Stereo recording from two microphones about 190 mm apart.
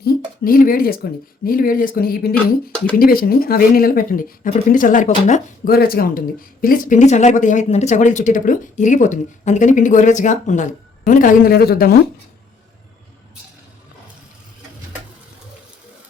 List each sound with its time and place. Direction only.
0.0 s speech: 50° left (ahead or behind)
2.3 s speech: 5° left (ahead or behind)
3.0 s speech: 50° left (ahead or behind)